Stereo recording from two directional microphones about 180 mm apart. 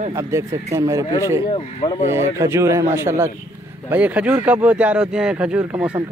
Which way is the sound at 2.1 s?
15° right (ahead or behind).